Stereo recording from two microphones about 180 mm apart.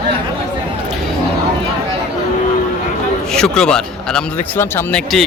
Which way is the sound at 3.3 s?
5° left (ahead or behind).